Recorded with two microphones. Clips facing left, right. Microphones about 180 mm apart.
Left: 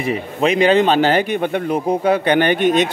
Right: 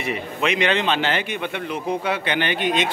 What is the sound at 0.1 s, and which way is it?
A man's voice, 35° left (ahead or behind).